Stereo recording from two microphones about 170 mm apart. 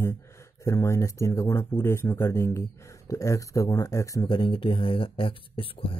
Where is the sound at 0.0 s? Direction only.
15° left (ahead or behind).